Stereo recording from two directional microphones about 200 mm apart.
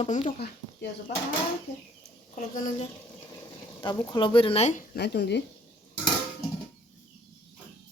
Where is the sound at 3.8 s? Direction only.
25° left (ahead or behind).